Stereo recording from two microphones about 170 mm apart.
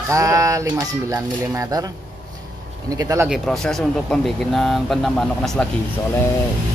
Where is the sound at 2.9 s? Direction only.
20° right (ahead or behind).